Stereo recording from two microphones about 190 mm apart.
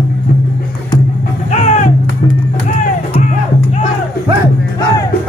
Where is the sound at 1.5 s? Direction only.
40° left (ahead or behind).